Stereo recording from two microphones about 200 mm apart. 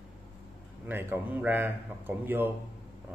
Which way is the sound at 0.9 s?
10° right (ahead or behind).